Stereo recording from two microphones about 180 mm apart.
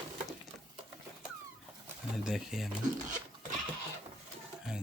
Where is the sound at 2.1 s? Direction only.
Centre (ahead or behind).